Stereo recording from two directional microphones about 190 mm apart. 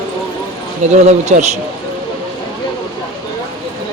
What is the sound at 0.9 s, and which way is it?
Speech, 35° right (ahead or behind).